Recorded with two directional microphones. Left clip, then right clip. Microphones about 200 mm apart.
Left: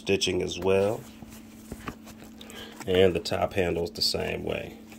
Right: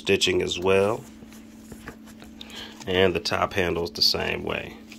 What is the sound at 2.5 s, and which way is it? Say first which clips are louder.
Speech: even; 10° left (ahead or behind).